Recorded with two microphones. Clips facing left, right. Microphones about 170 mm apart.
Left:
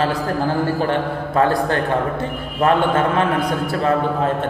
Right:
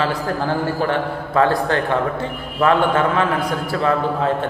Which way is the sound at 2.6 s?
50° left (ahead or behind).